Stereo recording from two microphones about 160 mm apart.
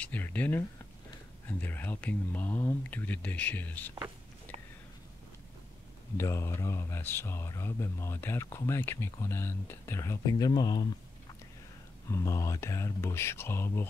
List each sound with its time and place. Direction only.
0.0 s speech: 10° left (ahead or behind)
6.1 s speech: 15° left (ahead or behind)
12.1 s speech: 20° left (ahead or behind)